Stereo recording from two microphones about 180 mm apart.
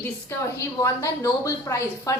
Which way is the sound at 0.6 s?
15° left (ahead or behind).